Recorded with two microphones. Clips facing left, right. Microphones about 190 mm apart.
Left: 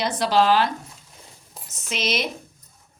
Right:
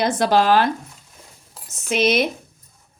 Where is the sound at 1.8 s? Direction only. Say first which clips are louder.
Right 8 dB; 55° right (ahead or behind).